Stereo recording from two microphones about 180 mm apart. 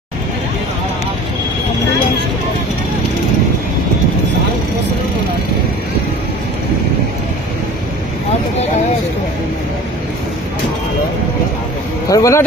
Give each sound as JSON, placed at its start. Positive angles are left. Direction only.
{"t": 12.1, "sound": "speech", "side_deg": 15}